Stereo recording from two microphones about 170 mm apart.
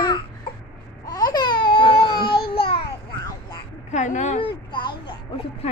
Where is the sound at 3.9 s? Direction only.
45° left (ahead or behind).